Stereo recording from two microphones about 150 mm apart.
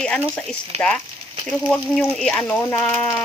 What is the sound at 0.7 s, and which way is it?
Speech, 45° right (ahead or behind).